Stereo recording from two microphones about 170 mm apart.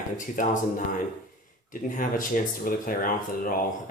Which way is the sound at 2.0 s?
55° left (ahead or behind).